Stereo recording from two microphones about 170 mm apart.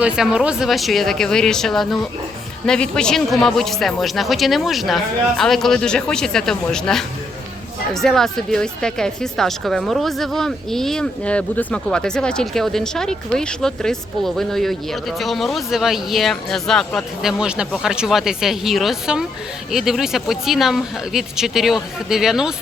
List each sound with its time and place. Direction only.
0.0 s speech: 5° right (ahead or behind)